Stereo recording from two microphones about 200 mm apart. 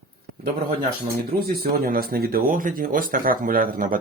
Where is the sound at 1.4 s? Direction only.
50° right (ahead or behind).